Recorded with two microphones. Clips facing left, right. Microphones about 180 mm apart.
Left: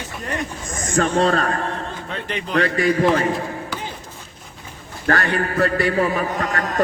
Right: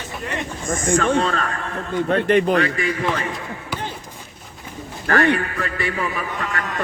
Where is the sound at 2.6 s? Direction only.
40° left (ahead or behind).